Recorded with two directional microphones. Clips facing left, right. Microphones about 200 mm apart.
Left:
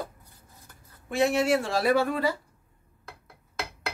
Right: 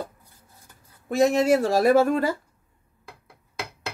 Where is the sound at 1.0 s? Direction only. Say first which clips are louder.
Right 4 dB; 40° right (ahead or behind).